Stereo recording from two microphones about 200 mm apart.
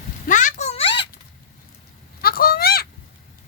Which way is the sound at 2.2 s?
50° left (ahead or behind).